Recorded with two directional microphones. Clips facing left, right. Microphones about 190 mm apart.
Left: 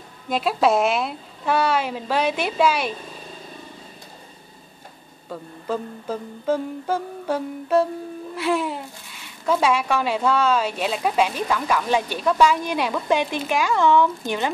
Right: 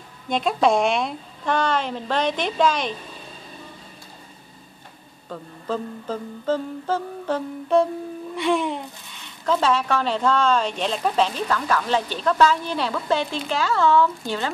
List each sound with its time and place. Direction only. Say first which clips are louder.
0.3 s speech: even; 5° left (ahead or behind)
5.3 s speech: left 1 dB; 10° left (ahead or behind)